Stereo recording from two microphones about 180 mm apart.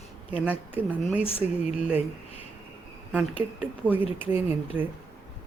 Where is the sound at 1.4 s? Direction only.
40° left (ahead or behind).